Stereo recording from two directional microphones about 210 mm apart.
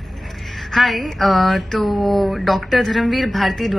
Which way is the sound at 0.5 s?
Centre (ahead or behind).